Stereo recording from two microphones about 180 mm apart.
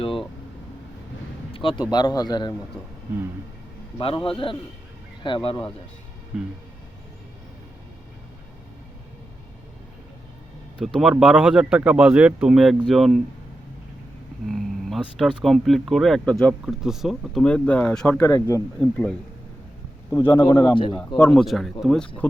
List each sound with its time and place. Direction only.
1.5 s a man's voice: 25° left (ahead or behind)
3.9 s a man's voice: 30° left (ahead or behind)
6.3 s speech: 5° right (ahead or behind)
10.8 s speech: 5° right (ahead or behind)
14.4 s speech: centre (ahead or behind)
18.3 s speech: 20° left (ahead or behind)
20.1 s speech: 15° left (ahead or behind)
20.7 s a man's voice: 25° left (ahead or behind)
21.2 s speech: 5° left (ahead or behind)